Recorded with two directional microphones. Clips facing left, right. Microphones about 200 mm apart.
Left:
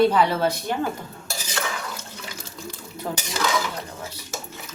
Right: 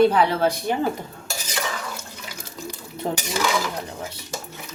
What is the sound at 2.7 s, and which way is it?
Dishes, 15° right (ahead or behind).